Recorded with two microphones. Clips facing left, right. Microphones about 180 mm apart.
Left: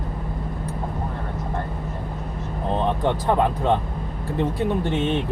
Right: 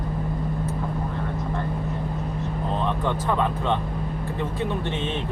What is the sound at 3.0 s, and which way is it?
Speech, 35° left (ahead or behind).